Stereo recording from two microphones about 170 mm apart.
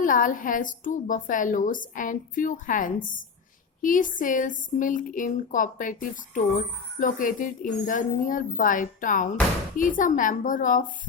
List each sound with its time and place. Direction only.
0.0 s speech: 50° left (ahead or behind)